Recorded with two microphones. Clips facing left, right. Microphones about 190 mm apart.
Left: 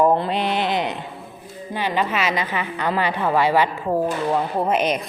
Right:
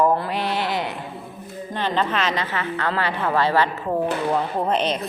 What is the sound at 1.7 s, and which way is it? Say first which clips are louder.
A woman's voice: left 1 dB; 10° left (ahead or behind).